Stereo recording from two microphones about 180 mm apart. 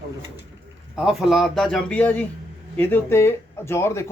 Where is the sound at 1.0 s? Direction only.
5° right (ahead or behind); by 4.1 s 15° left (ahead or behind).